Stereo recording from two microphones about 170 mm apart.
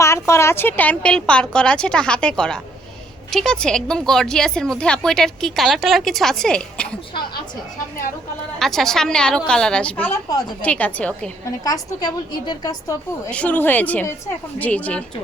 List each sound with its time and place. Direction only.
0.0 s a woman's voice: 15° left (ahead or behind)
8.5 s a woman's voice: centre (ahead or behind)
11.6 s a woman's voice: 20° left (ahead or behind)
13.3 s a woman's voice: 10° left (ahead or behind)